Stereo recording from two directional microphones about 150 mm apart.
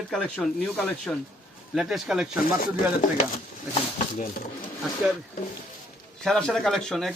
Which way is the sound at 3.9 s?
60° left (ahead or behind).